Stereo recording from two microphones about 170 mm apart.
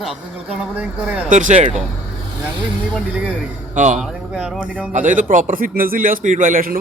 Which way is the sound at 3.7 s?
45° right (ahead or behind).